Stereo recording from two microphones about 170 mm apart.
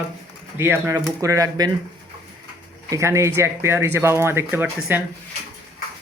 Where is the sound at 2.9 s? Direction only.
15° right (ahead or behind).